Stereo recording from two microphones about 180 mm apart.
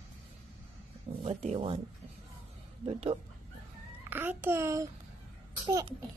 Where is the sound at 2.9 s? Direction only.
30° right (ahead or behind).